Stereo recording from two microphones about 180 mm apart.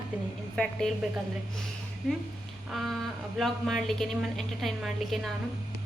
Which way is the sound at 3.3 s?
Centre (ahead or behind).